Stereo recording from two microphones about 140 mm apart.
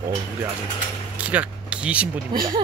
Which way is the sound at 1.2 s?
10° right (ahead or behind).